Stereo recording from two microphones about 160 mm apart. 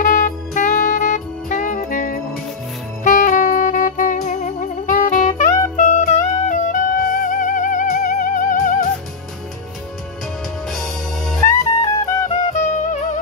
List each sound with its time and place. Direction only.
0.0 s music: 55° left (ahead or behind)
3.0 s saxophone: 50° left (ahead or behind)
5.8 s music: 50° left (ahead or behind)
10.7 s music: centre (ahead or behind)
11.4 s music: 20° left (ahead or behind)
12.3 s music: 45° left (ahead or behind)